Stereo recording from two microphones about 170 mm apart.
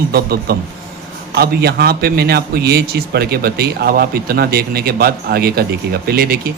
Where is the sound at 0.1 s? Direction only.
65° right (ahead or behind).